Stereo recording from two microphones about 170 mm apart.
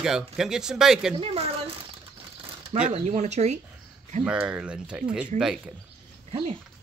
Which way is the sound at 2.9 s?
40° right (ahead or behind).